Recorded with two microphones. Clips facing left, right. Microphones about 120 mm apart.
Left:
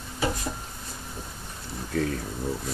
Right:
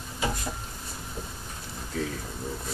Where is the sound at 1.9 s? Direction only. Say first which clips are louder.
Left 5 dB; 65° left (ahead or behind).